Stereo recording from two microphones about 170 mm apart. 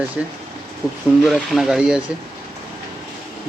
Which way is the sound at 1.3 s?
Centre (ahead or behind).